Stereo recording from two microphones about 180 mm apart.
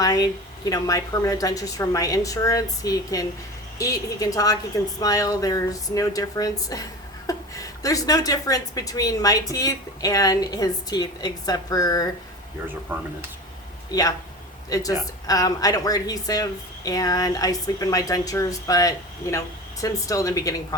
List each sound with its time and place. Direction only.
0.0 s speech: 20° left (ahead or behind)
12.9 s speech: 10° right (ahead or behind)
14.7 s speech: 20° left (ahead or behind)